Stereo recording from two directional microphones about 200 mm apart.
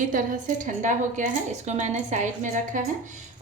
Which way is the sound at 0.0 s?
40° right (ahead or behind).